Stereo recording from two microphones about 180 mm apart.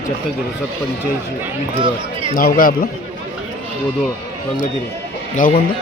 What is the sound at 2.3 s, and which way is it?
Speech, 50° left (ahead or behind).